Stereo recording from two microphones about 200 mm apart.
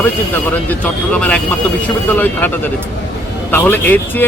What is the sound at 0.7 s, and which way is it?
Speech, 5° left (ahead or behind).